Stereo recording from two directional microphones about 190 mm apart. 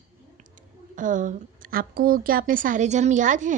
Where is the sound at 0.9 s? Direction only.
45° right (ahead or behind).